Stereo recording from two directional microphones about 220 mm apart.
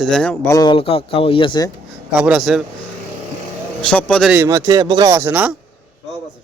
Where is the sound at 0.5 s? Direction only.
20° left (ahead or behind).